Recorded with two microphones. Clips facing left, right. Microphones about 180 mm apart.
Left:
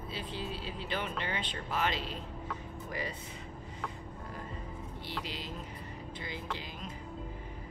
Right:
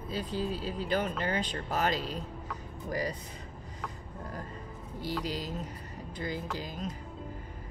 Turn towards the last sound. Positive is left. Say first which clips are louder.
# right 5 dB
turn(degrees=-40)  # may be behind; listen again after turning